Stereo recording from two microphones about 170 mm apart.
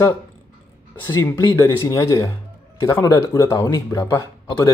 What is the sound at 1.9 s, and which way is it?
Speech, 20° left (ahead or behind).